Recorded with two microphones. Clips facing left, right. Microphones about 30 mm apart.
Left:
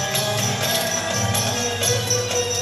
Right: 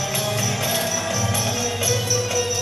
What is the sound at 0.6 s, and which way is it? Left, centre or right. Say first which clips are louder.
Music: left 1 dB; left.